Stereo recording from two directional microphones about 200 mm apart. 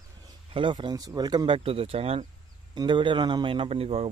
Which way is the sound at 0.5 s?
25° right (ahead or behind).